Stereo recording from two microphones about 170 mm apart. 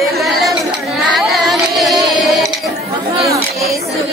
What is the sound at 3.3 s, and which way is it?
Chatter, 20° right (ahead or behind).